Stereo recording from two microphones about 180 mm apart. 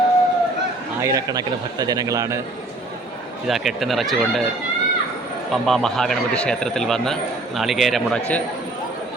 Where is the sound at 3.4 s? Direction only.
Centre (ahead or behind).